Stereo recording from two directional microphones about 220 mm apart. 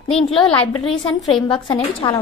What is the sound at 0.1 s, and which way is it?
Speech, 25° left (ahead or behind).